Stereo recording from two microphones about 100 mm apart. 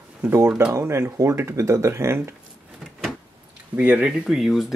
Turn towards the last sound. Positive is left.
turn(degrees=-5)  # may be behind; listen again after turning